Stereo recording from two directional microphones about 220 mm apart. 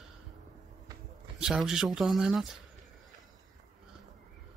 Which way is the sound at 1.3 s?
Centre (ahead or behind).